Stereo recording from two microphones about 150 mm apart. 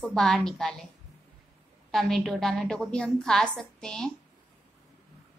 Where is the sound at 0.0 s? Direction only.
Centre (ahead or behind).